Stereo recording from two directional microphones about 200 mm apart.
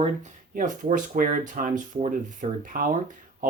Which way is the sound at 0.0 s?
40° right (ahead or behind).